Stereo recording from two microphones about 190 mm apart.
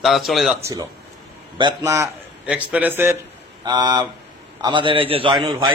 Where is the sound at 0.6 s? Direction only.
15° right (ahead or behind).